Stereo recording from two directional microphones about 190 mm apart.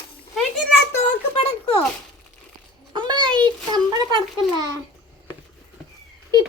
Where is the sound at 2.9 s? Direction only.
20° right (ahead or behind).